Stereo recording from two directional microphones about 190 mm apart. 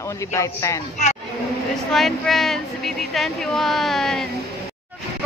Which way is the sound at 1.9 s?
Centre (ahead or behind).